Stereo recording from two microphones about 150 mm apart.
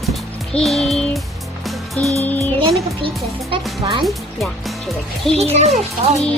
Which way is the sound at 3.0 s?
35° right (ahead or behind).